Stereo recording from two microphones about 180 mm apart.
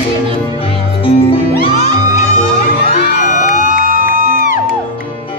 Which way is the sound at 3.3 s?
45° left (ahead or behind).